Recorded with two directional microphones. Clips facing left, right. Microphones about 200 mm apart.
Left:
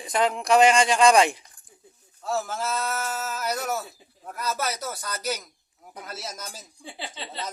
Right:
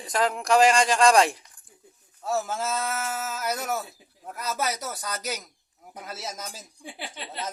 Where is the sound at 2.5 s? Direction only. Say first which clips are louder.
Even; 20° right (ahead or behind).